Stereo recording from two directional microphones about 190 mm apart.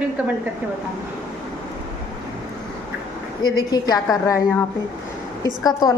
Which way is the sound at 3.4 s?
20° left (ahead or behind).